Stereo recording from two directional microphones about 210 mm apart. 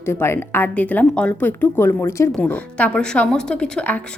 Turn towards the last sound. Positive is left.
turn(degrees=5)  # may be behind; listen again after turning